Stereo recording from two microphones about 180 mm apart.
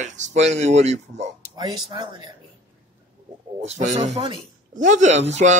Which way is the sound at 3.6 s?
40° right (ahead or behind).